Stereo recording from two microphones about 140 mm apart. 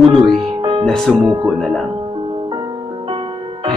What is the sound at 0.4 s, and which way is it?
Music, 35° right (ahead or behind).